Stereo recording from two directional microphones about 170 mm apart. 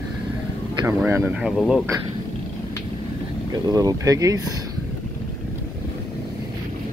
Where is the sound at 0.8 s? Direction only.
15° right (ahead or behind).